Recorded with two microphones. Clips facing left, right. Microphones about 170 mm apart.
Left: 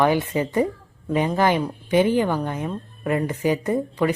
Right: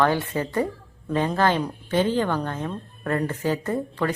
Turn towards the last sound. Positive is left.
turn(degrees=15)  # may be behind; listen again after turning